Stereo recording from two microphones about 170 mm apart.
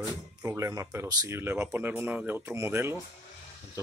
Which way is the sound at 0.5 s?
20° right (ahead or behind).